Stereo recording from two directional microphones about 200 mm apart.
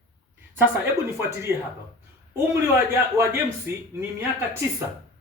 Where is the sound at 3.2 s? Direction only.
15° right (ahead or behind).